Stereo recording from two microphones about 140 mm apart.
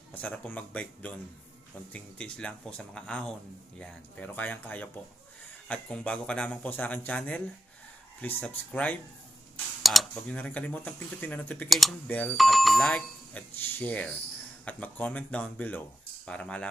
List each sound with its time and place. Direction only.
0.1 s speech: 10° left (ahead or behind)
9.8 s speech: centre (ahead or behind)
10.3 s speech: 10° left (ahead or behind)
12.4 s speech: centre (ahead or behind)